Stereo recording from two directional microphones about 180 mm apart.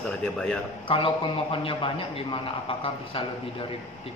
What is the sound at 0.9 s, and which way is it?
A man's voice, 30° left (ahead or behind).